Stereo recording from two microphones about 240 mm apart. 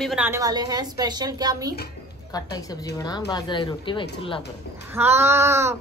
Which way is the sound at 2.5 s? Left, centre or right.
Centre.